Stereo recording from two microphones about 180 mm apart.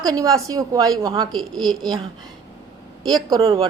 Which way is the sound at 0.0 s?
20° right (ahead or behind).